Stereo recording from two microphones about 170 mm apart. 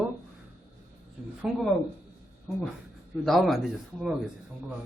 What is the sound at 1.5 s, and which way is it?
Speech, centre (ahead or behind).